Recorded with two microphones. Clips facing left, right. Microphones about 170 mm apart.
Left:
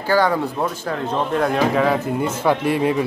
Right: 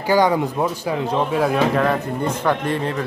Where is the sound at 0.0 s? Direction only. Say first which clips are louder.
Right 1 dB; 15° right (ahead or behind).